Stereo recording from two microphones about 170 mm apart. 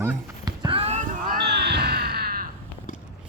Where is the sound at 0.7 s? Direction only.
40° right (ahead or behind).